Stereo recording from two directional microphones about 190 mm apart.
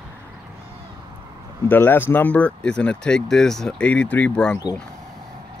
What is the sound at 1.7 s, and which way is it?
Speech, 10° left (ahead or behind).